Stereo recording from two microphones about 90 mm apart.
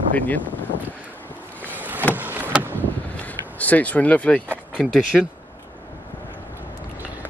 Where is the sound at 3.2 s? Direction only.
15° left (ahead or behind).